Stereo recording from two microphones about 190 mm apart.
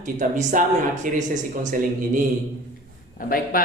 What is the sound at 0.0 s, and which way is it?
Speech, 40° right (ahead or behind).